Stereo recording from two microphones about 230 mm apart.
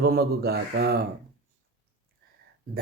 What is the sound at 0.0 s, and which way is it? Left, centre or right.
Speech, right.